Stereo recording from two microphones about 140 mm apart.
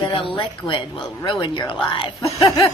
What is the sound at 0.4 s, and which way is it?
Speech, 35° left (ahead or behind).